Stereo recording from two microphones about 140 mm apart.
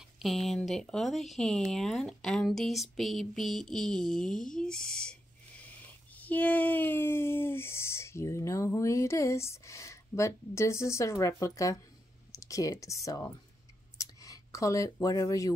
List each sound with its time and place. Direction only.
0.2 s speech: centre (ahead or behind)
6.1 s speech: 10° left (ahead or behind)
12.3 s clicking: 25° left (ahead or behind)
12.8 s speech: 20° left (ahead or behind)
13.9 s a sound: 25° left (ahead or behind)